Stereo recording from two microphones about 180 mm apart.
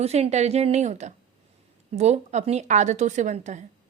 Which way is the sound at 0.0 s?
35° right (ahead or behind).